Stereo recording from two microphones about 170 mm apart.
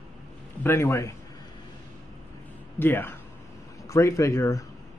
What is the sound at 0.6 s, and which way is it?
Speech, 15° left (ahead or behind).